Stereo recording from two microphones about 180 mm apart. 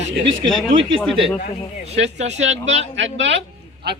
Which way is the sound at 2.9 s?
85° right.